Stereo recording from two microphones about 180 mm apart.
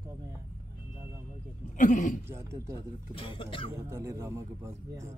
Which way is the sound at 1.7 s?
45° left (ahead or behind).